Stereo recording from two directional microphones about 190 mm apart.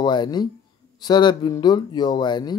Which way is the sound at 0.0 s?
25° left (ahead or behind).